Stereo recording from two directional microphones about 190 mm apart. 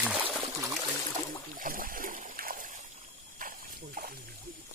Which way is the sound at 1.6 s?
45° right (ahead or behind).